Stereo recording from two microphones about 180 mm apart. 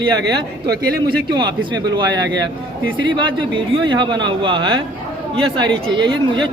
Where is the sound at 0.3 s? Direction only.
60° right (ahead or behind).